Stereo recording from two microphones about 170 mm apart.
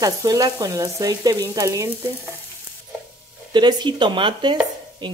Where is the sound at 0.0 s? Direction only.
20° right (ahead or behind).